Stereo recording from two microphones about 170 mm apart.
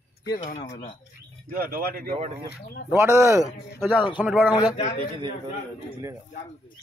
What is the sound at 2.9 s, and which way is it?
Speech, 15° right (ahead or behind).